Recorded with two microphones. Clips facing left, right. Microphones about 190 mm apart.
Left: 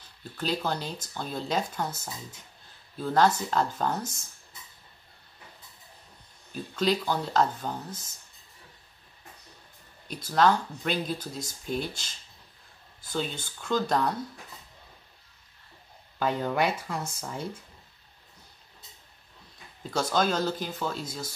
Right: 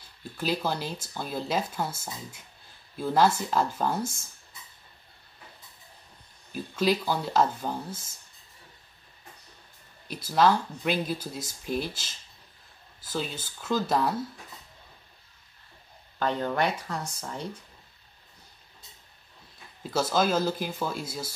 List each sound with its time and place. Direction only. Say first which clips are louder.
0.4 s speech: right 1 dB; 5° right (ahead or behind)
6.5 s speech: right 1 dB; 5° right (ahead or behind)
10.0 s speech: right 1 dB; 5° right (ahead or behind)
13.1 s speech: left 1 dB; 5° right (ahead or behind)
16.2 s speech: even; 10° left (ahead or behind)
19.8 s speech: right 1 dB; 5° right (ahead or behind)